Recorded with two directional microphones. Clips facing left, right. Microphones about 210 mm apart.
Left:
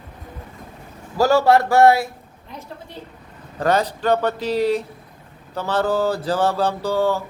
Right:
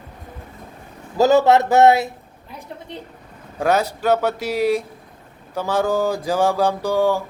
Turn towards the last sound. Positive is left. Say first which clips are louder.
# right 2 dB
turn(degrees=-15)  # may be behind; listen again after turning